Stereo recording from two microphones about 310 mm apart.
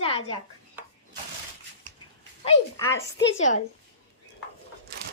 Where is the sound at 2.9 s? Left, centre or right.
Left.